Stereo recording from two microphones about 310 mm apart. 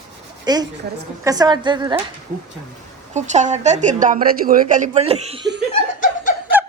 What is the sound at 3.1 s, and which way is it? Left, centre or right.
A woman's voice, right.